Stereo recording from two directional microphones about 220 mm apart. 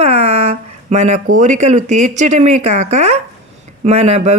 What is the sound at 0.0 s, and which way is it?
Speech, 30° right (ahead or behind).